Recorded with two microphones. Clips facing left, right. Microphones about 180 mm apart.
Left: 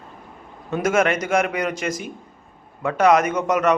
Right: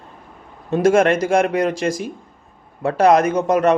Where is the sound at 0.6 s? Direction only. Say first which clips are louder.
Right 5 dB; 30° right (ahead or behind).